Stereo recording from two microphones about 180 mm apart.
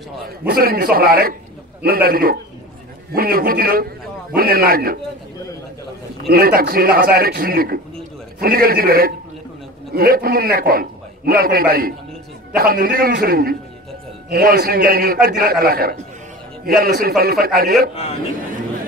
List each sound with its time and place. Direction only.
0.5 s a man's voice: 55° right (ahead or behind)
6.2 s a man's voice: 55° right (ahead or behind)